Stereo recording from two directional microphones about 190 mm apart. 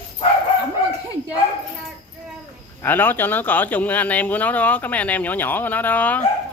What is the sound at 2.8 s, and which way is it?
Speech, 10° left (ahead or behind).